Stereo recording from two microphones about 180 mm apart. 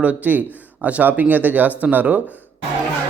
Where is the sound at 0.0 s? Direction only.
10° right (ahead or behind).